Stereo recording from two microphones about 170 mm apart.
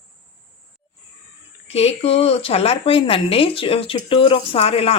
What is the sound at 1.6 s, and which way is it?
Speech, 40° left (ahead or behind).